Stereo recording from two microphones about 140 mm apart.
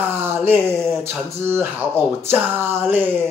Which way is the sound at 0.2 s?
15° right (ahead or behind).